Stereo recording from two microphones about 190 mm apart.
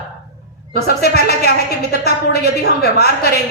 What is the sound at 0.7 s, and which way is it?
A woman's voice, 55° left (ahead or behind).